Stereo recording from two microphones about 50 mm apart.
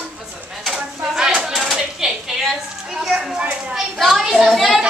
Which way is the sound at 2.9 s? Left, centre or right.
Centre.